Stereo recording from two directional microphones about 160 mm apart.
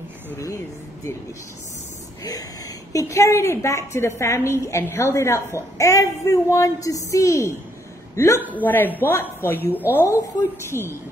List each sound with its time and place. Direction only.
2.9 s a woman's voice: 20° left (ahead or behind)
8.4 s a man's voice: 10° right (ahead or behind)
8.6 s a woman's voice: 10° left (ahead or behind)